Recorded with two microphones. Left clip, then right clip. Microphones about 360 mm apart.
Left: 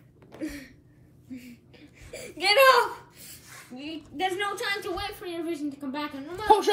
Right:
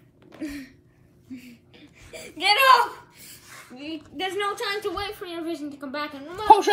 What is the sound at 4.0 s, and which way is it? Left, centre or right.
A child's voice, centre.